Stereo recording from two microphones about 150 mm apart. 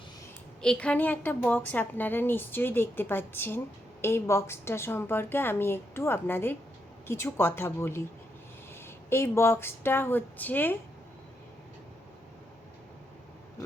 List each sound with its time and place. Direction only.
0.6 s a woman's voice: 5° left (ahead or behind)
9.0 s a woman's voice: 15° left (ahead or behind)